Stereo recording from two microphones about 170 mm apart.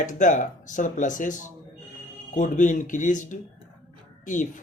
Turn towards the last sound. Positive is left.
turn(degrees=50)  # may be behind; listen again after turning